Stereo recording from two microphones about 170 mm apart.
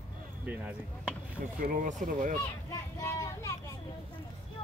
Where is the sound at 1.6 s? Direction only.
50° right (ahead or behind).